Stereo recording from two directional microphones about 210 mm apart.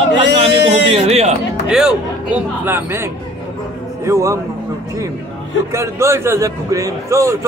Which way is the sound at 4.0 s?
15° right (ahead or behind).